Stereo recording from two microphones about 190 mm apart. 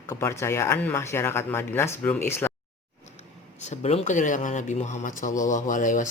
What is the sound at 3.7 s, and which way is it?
Speech, 35° left (ahead or behind).